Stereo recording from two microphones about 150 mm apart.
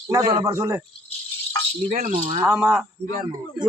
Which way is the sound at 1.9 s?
65° right (ahead or behind).